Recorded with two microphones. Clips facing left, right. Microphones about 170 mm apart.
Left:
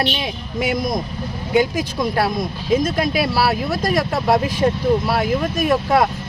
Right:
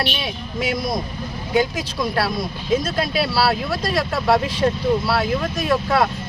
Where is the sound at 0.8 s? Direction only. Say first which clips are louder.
Left 2 dB; 20° left (ahead or behind).